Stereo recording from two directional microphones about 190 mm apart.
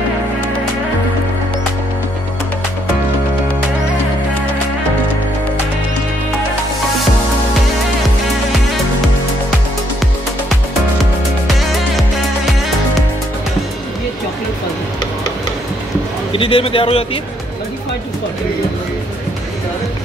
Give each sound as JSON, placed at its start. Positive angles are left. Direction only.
{"t": 16.3, "sound": "a man's voice", "side_deg": 30}